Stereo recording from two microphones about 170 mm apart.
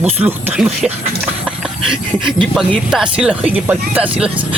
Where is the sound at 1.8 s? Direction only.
30° right (ahead or behind).